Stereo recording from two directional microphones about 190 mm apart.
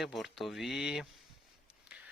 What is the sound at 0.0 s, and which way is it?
Speech, centre (ahead or behind).